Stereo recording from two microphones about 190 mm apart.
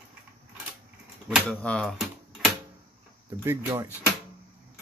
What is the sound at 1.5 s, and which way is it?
Speech, 5° left (ahead or behind).